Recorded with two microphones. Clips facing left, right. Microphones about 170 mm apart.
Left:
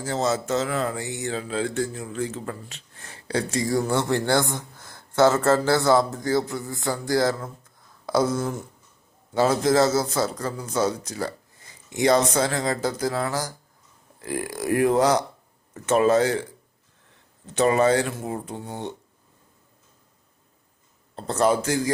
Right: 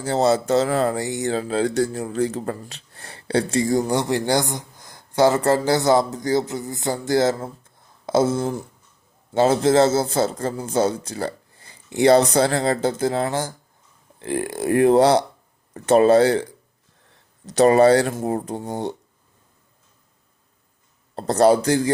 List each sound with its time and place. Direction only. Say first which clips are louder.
0.0 s speech: right 6 dB; 35° right (ahead or behind)
21.2 s speech: right 6 dB; 40° right (ahead or behind)